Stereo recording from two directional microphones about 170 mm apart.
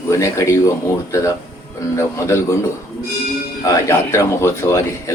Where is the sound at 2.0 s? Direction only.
15° left (ahead or behind).